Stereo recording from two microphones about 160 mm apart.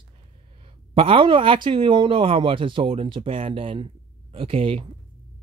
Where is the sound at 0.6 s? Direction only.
35° right (ahead or behind).